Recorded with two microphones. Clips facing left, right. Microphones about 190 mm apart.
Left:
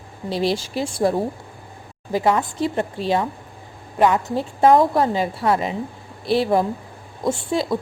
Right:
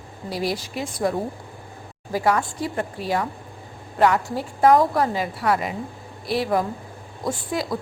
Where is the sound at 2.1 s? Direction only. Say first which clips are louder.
Left 2 dB; 20° left (ahead or behind).